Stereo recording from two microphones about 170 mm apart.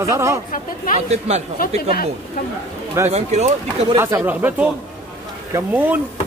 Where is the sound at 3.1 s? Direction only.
40° right (ahead or behind).